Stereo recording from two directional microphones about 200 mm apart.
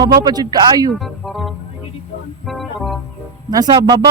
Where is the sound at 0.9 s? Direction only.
Centre (ahead or behind).